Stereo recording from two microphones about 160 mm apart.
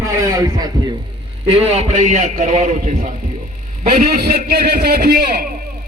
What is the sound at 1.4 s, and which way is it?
A man's voice, 40° right (ahead or behind).